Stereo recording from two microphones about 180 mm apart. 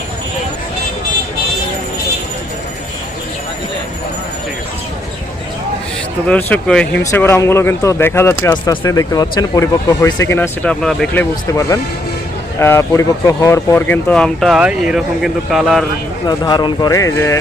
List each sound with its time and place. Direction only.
6.2 s speech: 5° left (ahead or behind)
16.2 s speech: 20° left (ahead or behind)